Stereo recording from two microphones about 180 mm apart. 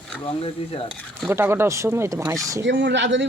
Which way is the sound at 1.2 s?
15° right (ahead or behind).